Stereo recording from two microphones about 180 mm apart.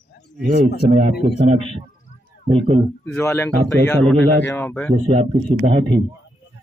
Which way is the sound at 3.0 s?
15° left (ahead or behind).